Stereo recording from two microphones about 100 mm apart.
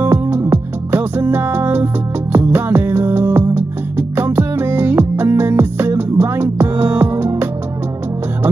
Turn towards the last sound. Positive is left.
turn(degrees=-20)  # may be behind; listen again after turning